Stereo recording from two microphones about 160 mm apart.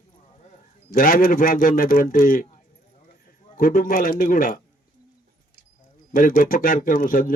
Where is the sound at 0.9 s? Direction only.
60° left (ahead or behind).